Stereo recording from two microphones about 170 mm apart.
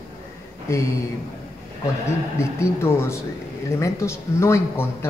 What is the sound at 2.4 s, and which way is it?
A man's voice, 15° left (ahead or behind).